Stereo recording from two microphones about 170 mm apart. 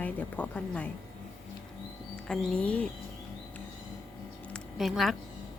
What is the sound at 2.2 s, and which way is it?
Speech, 5° left (ahead or behind).